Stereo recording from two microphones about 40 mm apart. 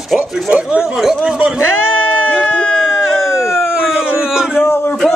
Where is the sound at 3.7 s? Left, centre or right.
Centre.